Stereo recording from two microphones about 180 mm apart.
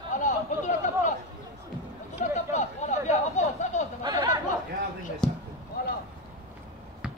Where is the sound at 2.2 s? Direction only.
40° left (ahead or behind).